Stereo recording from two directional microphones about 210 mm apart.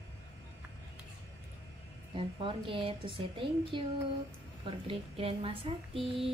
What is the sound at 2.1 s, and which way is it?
Speech, 25° right (ahead or behind).